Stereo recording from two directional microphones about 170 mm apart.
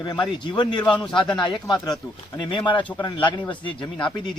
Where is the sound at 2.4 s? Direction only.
30° left (ahead or behind).